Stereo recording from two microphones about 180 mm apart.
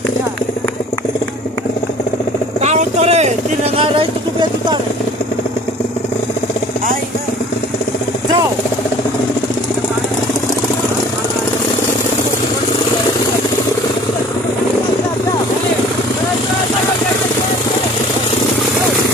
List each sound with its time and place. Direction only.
2.6 s vehicle: 40° right (ahead or behind)